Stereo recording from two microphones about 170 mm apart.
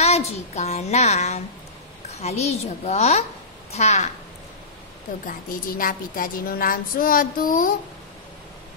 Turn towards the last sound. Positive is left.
turn(degrees=55)  # may be behind; listen again after turning